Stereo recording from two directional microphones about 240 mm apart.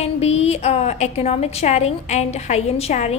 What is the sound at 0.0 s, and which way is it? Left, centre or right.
A woman's voice, left.